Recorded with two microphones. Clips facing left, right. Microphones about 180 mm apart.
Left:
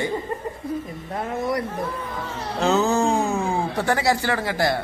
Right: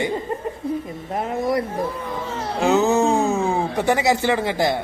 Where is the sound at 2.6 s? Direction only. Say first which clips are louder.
Right 2 dB; 20° right (ahead or behind).